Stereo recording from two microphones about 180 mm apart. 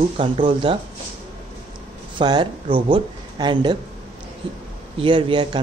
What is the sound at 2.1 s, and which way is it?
Speech, 25° right (ahead or behind).